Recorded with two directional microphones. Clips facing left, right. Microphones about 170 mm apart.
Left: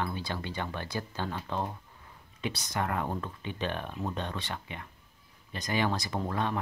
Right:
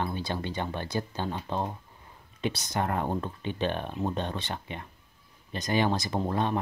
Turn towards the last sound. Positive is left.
turn(degrees=-25)  # may be behind; listen again after turning